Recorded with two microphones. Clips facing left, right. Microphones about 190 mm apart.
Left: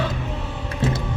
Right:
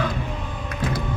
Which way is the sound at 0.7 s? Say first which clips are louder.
Left 3 dB; 25° left (ahead or behind).